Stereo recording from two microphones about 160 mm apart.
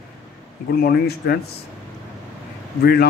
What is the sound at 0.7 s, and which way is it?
Speech, 75° left (ahead or behind).